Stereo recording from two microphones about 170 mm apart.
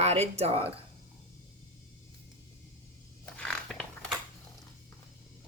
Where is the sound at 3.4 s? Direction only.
5° left (ahead or behind).